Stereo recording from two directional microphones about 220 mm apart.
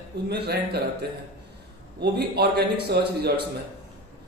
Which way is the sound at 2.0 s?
45° right (ahead or behind).